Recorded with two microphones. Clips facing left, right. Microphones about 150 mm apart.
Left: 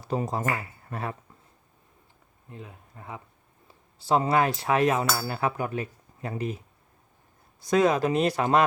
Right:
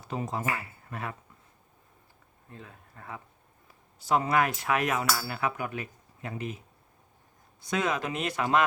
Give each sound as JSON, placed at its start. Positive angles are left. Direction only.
{"t": 0.0, "sound": "speech", "side_deg": 35}
{"t": 2.5, "sound": "speech", "side_deg": 20}
{"t": 3.7, "sound": "cutlery", "side_deg": 30}
{"t": 5.2, "sound": "speech", "side_deg": 35}
{"t": 7.6, "sound": "speech", "side_deg": 35}